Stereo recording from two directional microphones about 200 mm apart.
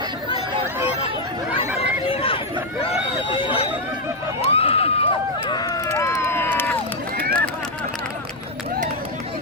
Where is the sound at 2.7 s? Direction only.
25° left (ahead or behind).